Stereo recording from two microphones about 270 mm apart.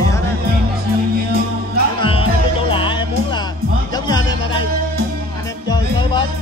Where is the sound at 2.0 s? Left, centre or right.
Centre.